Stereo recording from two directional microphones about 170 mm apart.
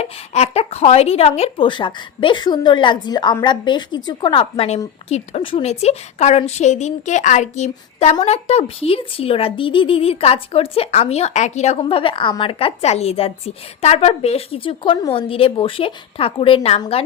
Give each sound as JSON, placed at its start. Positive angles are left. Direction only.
{"t": 0.0, "sound": "speech", "side_deg": 40}